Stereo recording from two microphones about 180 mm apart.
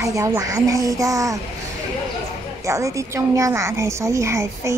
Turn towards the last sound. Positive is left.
turn(degrees=-15)  # may be behind; listen again after turning